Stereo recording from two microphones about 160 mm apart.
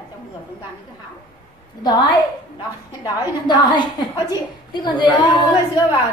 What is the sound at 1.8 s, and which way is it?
Speech, 25° left (ahead or behind).